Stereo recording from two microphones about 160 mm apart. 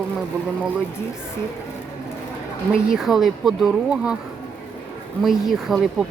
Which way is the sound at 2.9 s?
Centre (ahead or behind).